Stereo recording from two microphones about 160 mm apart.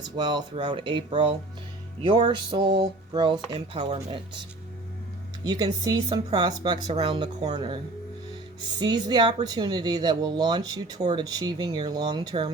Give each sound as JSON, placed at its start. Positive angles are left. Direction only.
{"t": 0.2, "sound": "speech", "side_deg": -25}
{"t": 8.8, "sound": "speech", "side_deg": -30}